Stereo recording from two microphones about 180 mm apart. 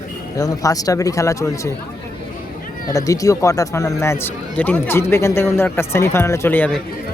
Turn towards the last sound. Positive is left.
turn(degrees=10)  # may be behind; listen again after turning